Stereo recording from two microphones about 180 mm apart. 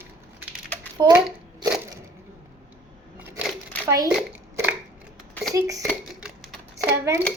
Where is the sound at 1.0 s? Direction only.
25° right (ahead or behind).